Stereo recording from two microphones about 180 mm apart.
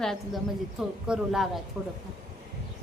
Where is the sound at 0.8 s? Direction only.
5° right (ahead or behind).